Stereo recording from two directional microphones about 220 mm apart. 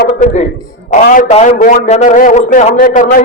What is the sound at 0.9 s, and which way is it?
A man's voice, 35° left (ahead or behind).